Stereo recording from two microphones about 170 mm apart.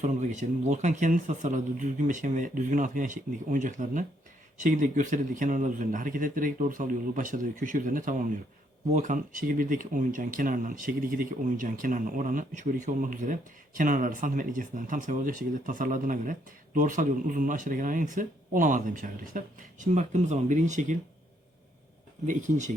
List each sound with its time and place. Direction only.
0.0 s speech: 45° right (ahead or behind)
22.3 s speech: 45° right (ahead or behind)